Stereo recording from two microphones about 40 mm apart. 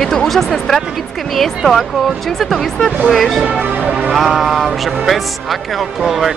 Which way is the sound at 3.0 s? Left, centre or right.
Centre.